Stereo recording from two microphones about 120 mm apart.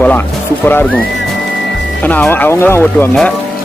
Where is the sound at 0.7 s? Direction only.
15° left (ahead or behind).